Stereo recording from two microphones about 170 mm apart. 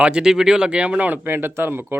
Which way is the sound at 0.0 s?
5° right (ahead or behind).